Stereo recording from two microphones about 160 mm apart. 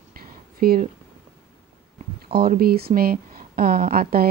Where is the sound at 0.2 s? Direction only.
65° right (ahead or behind).